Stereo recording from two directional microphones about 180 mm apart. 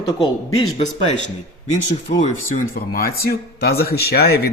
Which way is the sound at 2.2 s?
45° left (ahead or behind).